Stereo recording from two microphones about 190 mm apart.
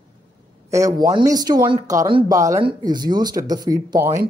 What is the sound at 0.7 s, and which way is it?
A woman's voice, 15° right (ahead or behind).